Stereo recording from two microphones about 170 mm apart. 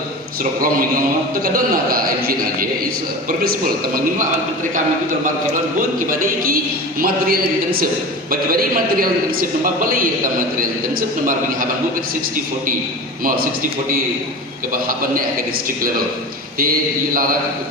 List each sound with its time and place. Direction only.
1.5 s a man's voice: 60° right (ahead or behind)
6.1 s a man's voice: 55° right (ahead or behind)
13.2 s a man's voice: 60° right (ahead or behind)
14.7 s a man's voice: 55° right (ahead or behind)